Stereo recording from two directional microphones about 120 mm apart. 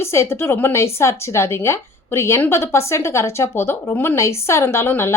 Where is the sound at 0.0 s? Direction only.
20° left (ahead or behind).